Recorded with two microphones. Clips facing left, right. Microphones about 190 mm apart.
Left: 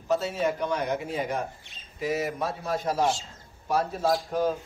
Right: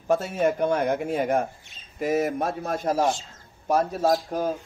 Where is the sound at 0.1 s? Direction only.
50° right (ahead or behind).